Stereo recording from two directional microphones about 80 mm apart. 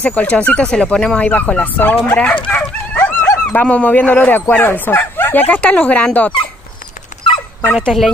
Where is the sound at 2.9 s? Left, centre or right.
Left.